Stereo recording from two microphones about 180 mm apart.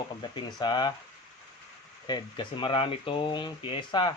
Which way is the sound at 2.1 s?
25° left (ahead or behind).